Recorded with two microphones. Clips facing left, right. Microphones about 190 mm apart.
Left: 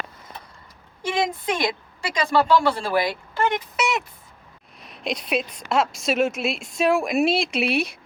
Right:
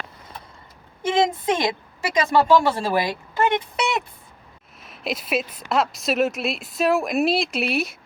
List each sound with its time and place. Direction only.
1.0 s speech: 25° right (ahead or behind)
4.8 s a woman's voice: centre (ahead or behind)